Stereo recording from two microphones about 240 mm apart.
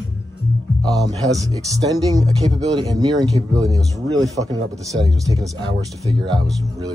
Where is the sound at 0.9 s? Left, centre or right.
Centre.